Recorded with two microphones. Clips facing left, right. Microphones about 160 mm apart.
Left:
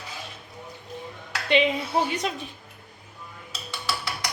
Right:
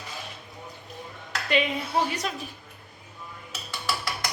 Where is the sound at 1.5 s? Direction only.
25° left (ahead or behind).